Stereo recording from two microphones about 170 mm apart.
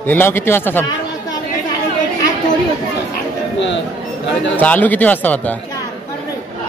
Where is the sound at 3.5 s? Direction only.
90° left.